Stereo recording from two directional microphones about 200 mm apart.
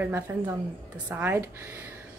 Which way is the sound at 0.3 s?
10° right (ahead or behind).